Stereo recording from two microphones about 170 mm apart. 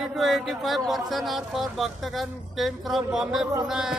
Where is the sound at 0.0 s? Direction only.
Centre (ahead or behind).